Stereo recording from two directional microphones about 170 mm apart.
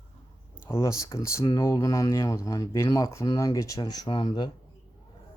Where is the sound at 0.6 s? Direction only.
20° left (ahead or behind).